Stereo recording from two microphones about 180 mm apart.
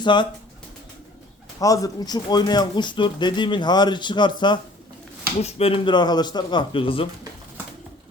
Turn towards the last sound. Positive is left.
turn(degrees=30)  # may be behind; listen again after turning